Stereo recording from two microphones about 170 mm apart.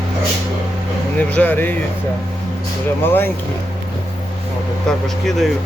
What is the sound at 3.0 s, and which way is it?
Speech, 10° left (ahead or behind).